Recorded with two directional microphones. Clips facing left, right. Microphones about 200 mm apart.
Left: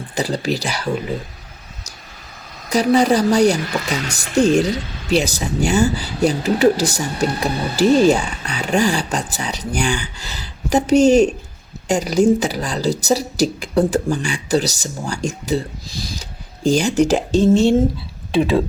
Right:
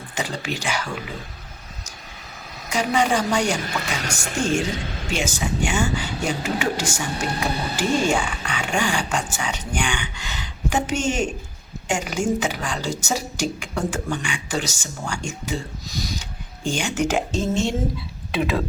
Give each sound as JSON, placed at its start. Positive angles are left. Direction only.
{"t": 0.1, "sound": "speech", "side_deg": 35}
{"t": 2.6, "sound": "speech", "side_deg": 35}